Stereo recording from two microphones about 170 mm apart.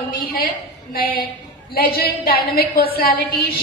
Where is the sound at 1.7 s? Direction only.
60° left (ahead or behind).